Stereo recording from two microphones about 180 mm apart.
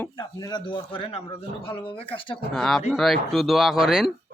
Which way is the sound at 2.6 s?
Centre (ahead or behind).